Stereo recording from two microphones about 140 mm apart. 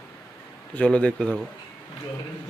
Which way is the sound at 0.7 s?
10° left (ahead or behind).